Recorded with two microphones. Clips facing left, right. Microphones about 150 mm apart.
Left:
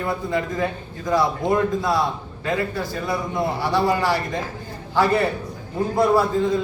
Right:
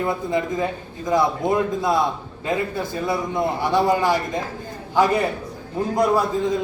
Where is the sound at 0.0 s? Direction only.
20° right (ahead or behind).